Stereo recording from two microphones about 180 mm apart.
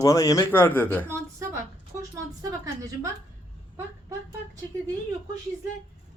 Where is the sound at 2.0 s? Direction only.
20° right (ahead or behind).